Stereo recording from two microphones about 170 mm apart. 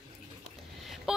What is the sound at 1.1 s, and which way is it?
Vehicle, 5° right (ahead or behind).